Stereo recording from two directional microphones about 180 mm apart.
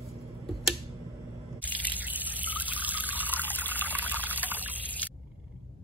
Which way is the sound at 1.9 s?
10° right (ahead or behind).